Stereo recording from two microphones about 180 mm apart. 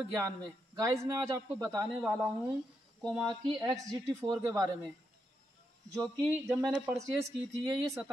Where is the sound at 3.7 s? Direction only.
20° right (ahead or behind).